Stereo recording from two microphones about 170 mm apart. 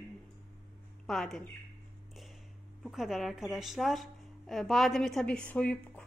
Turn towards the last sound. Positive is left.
turn(degrees=10)  # may be behind; listen again after turning